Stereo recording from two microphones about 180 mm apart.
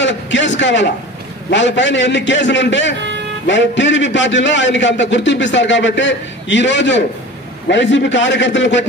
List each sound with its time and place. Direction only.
0.0 s a man's voice: 85° left